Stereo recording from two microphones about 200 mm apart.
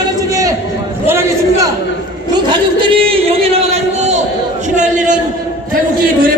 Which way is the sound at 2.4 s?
25° right (ahead or behind).